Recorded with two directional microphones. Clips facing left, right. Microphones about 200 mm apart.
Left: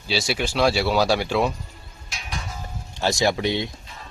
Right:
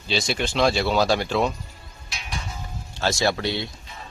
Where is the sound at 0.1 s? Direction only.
5° left (ahead or behind).